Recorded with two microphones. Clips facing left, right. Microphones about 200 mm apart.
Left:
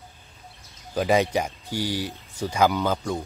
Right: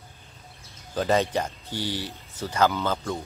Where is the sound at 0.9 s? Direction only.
10° left (ahead or behind).